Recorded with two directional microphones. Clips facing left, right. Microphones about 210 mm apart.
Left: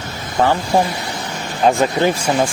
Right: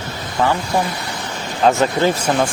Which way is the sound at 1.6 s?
15° left (ahead or behind).